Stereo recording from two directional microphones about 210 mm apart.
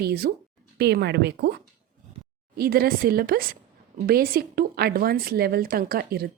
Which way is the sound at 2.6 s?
45° right (ahead or behind).